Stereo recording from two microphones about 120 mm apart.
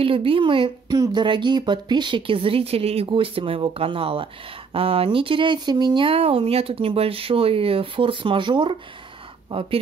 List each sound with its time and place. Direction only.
0.0 s speech: 50° right (ahead or behind)